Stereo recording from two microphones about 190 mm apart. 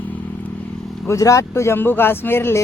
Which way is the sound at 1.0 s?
15° left (ahead or behind).